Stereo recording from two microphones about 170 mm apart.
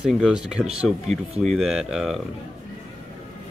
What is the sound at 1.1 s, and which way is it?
Speech, 40° right (ahead or behind).